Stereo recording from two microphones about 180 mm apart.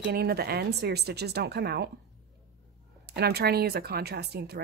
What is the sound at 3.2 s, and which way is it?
Speech, 60° right (ahead or behind).